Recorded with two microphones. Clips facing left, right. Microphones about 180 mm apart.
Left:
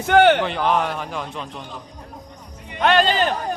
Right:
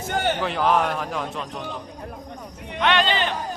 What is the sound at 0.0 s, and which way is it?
Speech, 70° left (ahead or behind).